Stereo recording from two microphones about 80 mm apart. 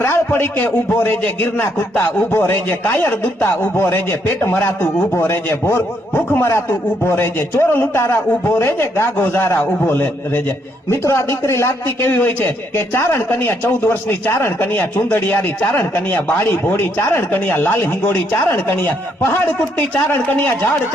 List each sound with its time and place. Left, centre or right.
0.0 s a man's voice: left